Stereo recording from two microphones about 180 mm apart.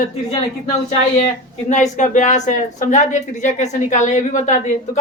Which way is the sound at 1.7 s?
45° left (ahead or behind).